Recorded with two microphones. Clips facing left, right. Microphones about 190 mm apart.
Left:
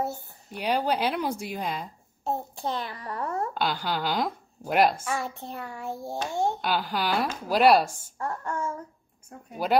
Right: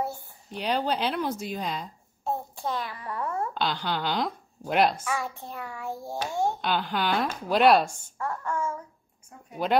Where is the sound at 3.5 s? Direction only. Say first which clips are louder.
Left 1 dB; 10° left (ahead or behind).